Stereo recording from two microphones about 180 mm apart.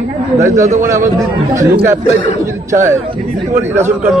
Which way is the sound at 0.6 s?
40° right (ahead or behind).